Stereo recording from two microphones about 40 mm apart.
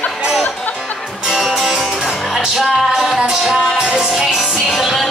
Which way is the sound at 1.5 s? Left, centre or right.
Centre.